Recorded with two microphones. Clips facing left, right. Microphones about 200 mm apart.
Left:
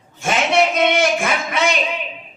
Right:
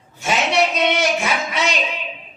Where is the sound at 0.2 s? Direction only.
50° left (ahead or behind).